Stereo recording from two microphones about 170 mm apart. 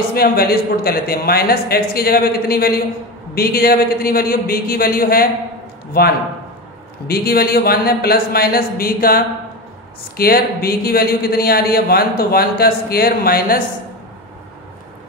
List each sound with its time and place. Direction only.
0.1 s speech: 65° left (ahead or behind)
7.1 s speech: 65° left (ahead or behind)